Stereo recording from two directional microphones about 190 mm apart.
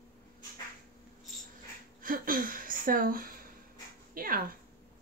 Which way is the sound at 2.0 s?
45° right (ahead or behind).